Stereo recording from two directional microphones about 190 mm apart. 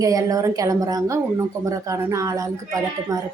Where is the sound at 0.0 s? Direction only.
20° right (ahead or behind).